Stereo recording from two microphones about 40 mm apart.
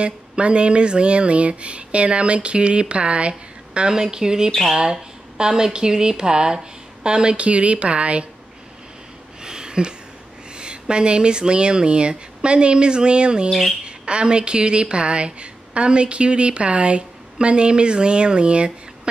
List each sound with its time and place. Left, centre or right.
0.0 s a woman's voice: right
3.9 s a woman's voice: centre
9.4 s a sound: centre
10.5 s a woman's voice: right
13.5 s speech: centre
13.8 s a woman's voice: right